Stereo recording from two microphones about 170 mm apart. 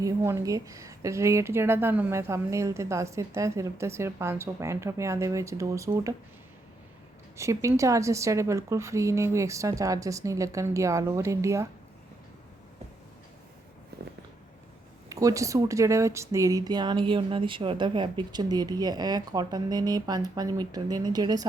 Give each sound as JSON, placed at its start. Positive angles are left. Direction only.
{"t": 0.0, "sound": "a woman's voice", "side_deg": -15}
{"t": 7.3, "sound": "a woman's voice", "side_deg": -15}
{"t": 13.9, "sound": "a sound", "side_deg": -70}
{"t": 15.1, "sound": "speech", "side_deg": -20}